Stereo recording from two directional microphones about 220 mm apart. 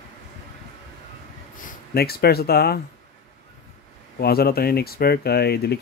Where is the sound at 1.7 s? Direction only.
45° left (ahead or behind).